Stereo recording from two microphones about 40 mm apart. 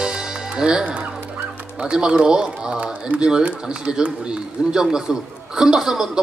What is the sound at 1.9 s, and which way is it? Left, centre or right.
Run, right.